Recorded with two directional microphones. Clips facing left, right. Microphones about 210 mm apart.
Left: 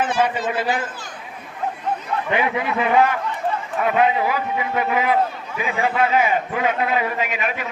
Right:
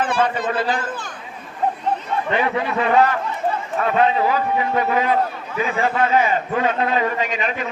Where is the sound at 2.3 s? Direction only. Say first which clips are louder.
Even; 10° left (ahead or behind).